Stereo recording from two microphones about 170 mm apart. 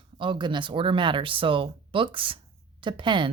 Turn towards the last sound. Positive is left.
turn(degrees=-30)  # may be behind; listen again after turning